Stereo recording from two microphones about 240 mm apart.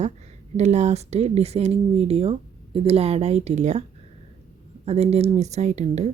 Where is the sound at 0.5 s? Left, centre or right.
Right.